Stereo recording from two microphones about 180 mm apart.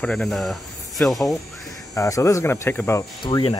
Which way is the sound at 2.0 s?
15° left (ahead or behind).